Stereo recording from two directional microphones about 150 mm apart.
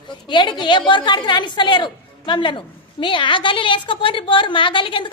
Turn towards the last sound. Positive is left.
turn(degrees=35)  # may be behind; listen again after turning